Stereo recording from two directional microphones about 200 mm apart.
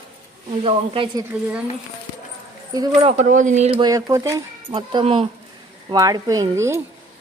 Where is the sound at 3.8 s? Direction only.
15° right (ahead or behind).